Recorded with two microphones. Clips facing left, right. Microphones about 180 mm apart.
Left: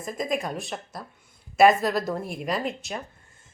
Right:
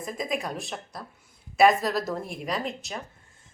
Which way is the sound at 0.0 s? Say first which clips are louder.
Left 2 dB; centre (ahead or behind).